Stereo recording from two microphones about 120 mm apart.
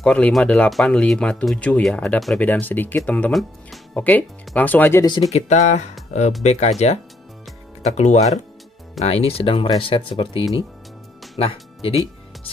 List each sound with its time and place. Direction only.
0.0 s speech: 10° left (ahead or behind)
2.6 s speech: 15° left (ahead or behind)
5.3 s speech: 70° left (ahead or behind)
9.0 s speech: 55° left (ahead or behind)